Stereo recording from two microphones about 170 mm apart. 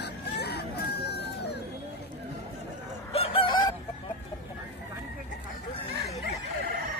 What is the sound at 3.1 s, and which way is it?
Chicken, 35° left (ahead or behind).